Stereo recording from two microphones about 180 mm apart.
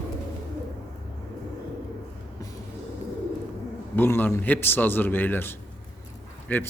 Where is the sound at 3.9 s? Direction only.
10° left (ahead or behind).